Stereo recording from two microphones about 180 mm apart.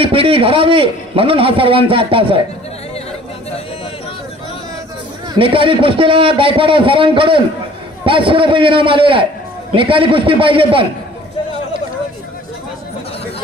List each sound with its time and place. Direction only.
0.0 s a man's voice: 30° right (ahead or behind)
5.4 s a man's voice: 30° right (ahead or behind)